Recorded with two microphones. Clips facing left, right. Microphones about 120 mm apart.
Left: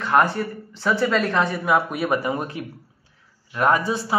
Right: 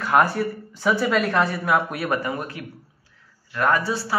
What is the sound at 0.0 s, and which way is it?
Speech, 5° right (ahead or behind).